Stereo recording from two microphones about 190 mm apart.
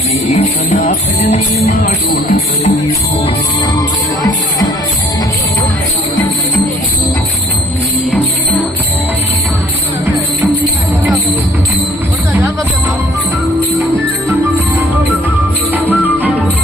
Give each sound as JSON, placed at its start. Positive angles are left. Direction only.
{"t": 0.3, "sound": "music", "side_deg": 40}
{"t": 15.7, "sound": "music", "side_deg": -10}